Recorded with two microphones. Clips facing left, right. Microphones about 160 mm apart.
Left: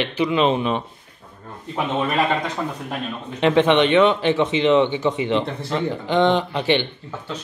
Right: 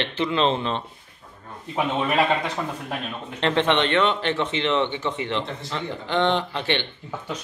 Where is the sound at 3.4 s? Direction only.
15° left (ahead or behind).